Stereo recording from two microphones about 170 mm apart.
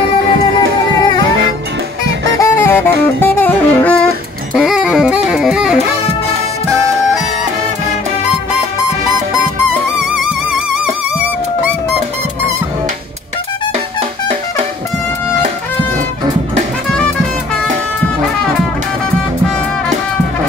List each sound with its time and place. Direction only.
0.6 s music: 25° left (ahead or behind)
2.3 s music: 15° left (ahead or behind)
4.6 s music: 5° right (ahead or behind)